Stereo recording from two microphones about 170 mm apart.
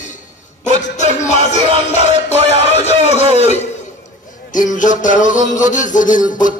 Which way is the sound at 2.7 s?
40° left (ahead or behind).